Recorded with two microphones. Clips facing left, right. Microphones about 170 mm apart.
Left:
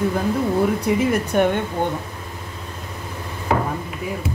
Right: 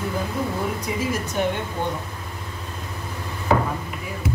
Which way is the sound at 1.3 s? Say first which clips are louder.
Left 6 dB; 60° left (ahead or behind).